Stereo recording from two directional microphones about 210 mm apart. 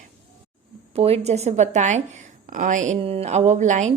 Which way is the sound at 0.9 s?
30° right (ahead or behind).